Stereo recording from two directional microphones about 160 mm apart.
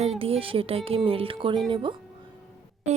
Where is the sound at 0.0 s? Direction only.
40° right (ahead or behind).